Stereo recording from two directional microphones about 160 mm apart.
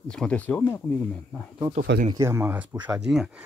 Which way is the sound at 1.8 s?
65° right (ahead or behind).